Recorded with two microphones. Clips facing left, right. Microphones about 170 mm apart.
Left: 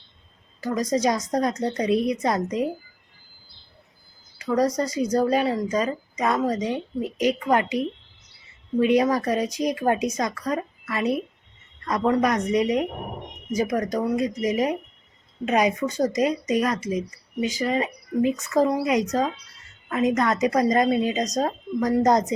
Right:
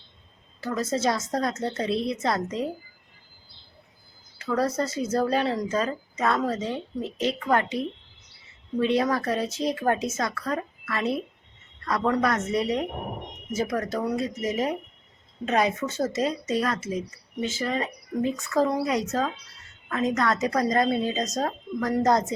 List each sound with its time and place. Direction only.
0.6 s a woman's voice: 15° left (ahead or behind)
4.4 s a woman's voice: 15° left (ahead or behind)
8.8 s a woman's voice: 10° left (ahead or behind)